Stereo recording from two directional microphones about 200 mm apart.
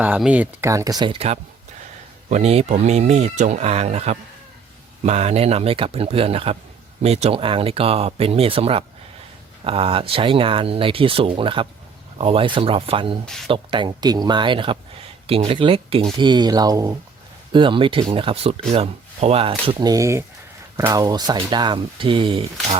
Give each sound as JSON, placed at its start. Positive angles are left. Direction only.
{"t": 0.0, "sound": "speech", "side_deg": -5}
{"t": 13.2, "sound": "speech", "side_deg": 0}
{"t": 13.5, "sound": "speech", "side_deg": -25}